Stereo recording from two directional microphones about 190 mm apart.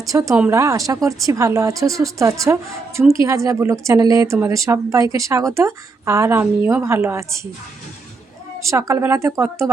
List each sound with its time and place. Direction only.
0.1 s a woman's voice: 15° right (ahead or behind)
8.6 s a woman's voice: 15° right (ahead or behind)